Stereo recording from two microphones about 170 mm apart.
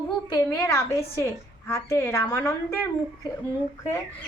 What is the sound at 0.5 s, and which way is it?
A woman's voice, 15° left (ahead or behind).